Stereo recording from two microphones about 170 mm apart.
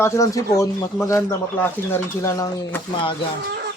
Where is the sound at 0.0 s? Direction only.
20° left (ahead or behind).